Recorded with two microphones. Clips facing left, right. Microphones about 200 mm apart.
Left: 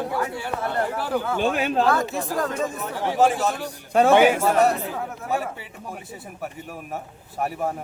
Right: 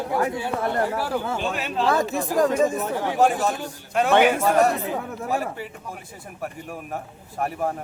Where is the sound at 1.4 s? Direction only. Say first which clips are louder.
Left 5 dB; 50° left (ahead or behind).